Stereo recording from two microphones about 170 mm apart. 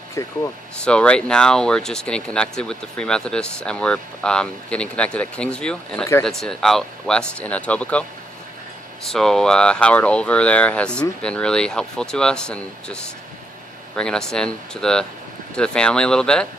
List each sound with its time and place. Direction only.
0.1 s speech: 15° left (ahead or behind)
0.8 s speech: 5° left (ahead or behind)
9.0 s speech: 5° left (ahead or behind)